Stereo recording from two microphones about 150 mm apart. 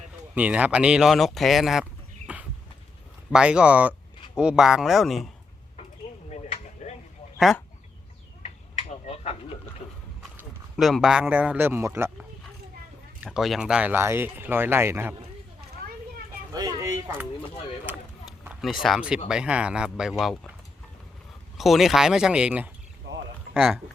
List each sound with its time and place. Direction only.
0.3 s speech: 10° right (ahead or behind)
6.2 s a sound: 45° left (ahead or behind)
7.3 s speech: centre (ahead or behind)
9.0 s a sound: 40° left (ahead or behind)
10.8 s speech: centre (ahead or behind); by 12.1 s 15° right (ahead or behind)
13.2 s speech: 5° right (ahead or behind)
16.5 s speech: 25° right (ahead or behind)
18.3 s speech: 5° right (ahead or behind)
21.6 s speech: centre (ahead or behind)